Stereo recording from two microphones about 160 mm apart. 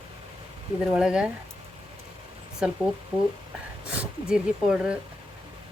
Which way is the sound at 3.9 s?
5° right (ahead or behind).